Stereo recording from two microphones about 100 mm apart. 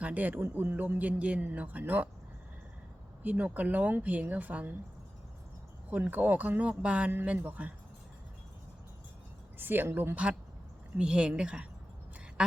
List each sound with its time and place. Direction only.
0.0 s speech: 15° right (ahead or behind)
3.2 s speech: 15° right (ahead or behind)
5.9 s speech: 15° right (ahead or behind)
9.6 s a woman's voice: 20° right (ahead or behind)